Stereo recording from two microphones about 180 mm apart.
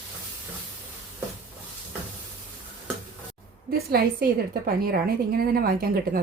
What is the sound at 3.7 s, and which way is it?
A woman's voice, 55° right (ahead or behind).